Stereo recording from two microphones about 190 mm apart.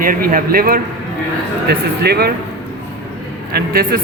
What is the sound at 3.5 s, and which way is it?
Speech, 50° right (ahead or behind).